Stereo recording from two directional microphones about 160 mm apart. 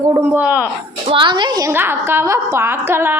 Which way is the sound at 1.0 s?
30° right (ahead or behind).